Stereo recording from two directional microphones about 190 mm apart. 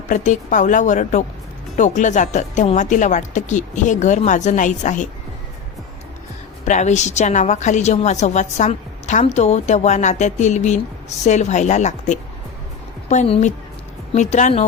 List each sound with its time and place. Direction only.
0.1 s a woman's voice: 40° left (ahead or behind)
6.7 s a woman's voice: 40° left (ahead or behind)